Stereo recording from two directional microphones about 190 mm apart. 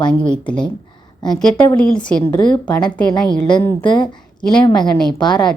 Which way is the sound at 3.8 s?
25° left (ahead or behind).